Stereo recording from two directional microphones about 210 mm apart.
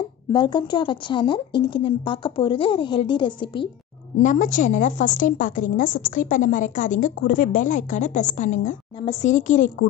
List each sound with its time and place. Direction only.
0.3 s speech: 20° left (ahead or behind)
4.2 s a woman's voice: 35° left (ahead or behind)